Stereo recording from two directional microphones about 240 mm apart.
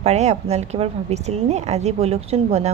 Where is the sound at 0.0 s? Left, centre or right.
Right.